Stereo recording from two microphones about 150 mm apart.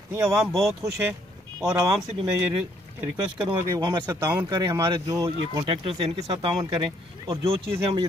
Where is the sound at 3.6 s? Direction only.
30° right (ahead or behind).